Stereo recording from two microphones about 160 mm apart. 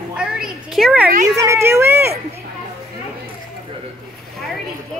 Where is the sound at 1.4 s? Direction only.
15° right (ahead or behind).